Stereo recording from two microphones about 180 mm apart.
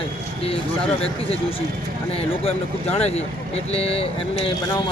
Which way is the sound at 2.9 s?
35° left (ahead or behind).